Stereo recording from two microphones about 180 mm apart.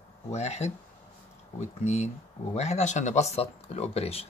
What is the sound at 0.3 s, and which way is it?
Speech, 40° left (ahead or behind).